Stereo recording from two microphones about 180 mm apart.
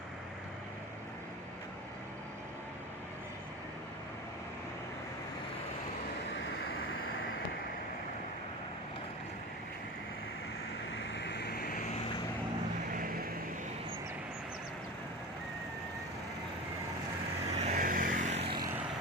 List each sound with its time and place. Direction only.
11.1 s vehicle: 75° left (ahead or behind); by 11.9 s 55° left (ahead or behind)
12.9 s vehicle: 50° right (ahead or behind)
17.6 s vehicle: 45° right (ahead or behind)